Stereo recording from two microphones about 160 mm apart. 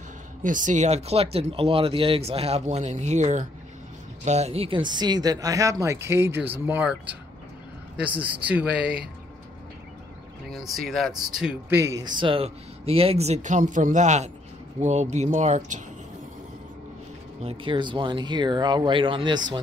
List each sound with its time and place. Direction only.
0.4 s speech: 55° right (ahead or behind); by 9.0 s 5° right (ahead or behind)
10.5 s speech: centre (ahead or behind)
11.7 s speech: 20° right (ahead or behind); by 15.8 s 50° right (ahead or behind)
17.4 s speech: 35° right (ahead or behind)